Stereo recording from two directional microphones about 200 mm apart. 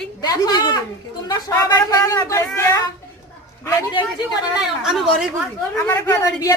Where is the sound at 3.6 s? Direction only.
25° left (ahead or behind).